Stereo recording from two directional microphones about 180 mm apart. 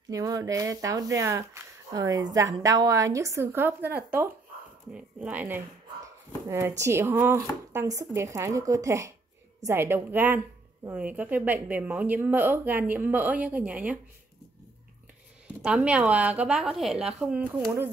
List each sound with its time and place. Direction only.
0.1 s speech: 20° right (ahead or behind)
6.8 s speech: 15° right (ahead or behind)
15.6 s a woman's voice: 5° right (ahead or behind)